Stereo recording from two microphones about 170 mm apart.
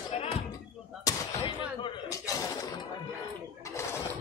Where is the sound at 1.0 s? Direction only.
20° left (ahead or behind).